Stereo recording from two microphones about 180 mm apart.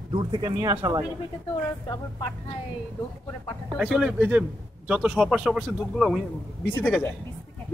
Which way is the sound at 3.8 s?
5° right (ahead or behind).